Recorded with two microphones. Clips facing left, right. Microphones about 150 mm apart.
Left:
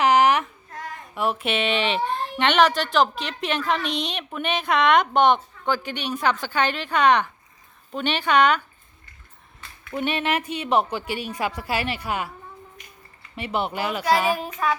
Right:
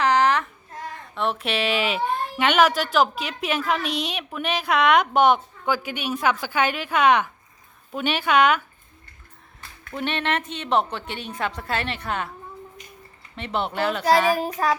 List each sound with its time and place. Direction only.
0.0 s child singing: 15° left (ahead or behind)
0.9 s speech: 10° left (ahead or behind)
9.9 s a woman's voice: 5° left (ahead or behind)
13.3 s a woman's voice: 5° left (ahead or behind)
14.3 s child singing: 35° right (ahead or behind)